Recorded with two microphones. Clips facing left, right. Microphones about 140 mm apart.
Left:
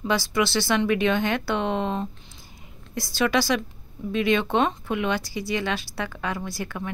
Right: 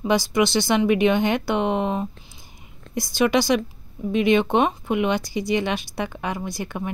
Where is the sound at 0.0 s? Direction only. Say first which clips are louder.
Right 4 dB; 15° right (ahead or behind).